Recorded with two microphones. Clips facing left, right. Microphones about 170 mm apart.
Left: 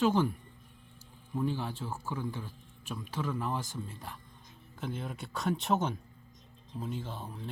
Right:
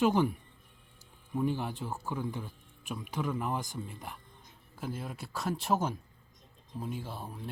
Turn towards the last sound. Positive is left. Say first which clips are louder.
# even
turn(degrees=-10)  # may be behind; listen again after turning